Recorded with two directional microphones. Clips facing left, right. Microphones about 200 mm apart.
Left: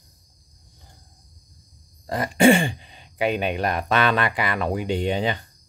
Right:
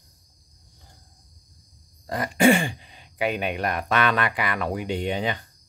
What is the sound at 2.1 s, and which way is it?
Speech, 25° left (ahead or behind).